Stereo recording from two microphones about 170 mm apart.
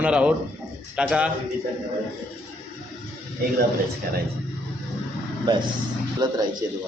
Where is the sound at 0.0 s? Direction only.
5° right (ahead or behind).